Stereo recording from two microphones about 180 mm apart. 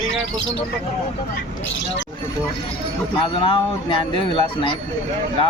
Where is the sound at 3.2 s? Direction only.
30° left (ahead or behind).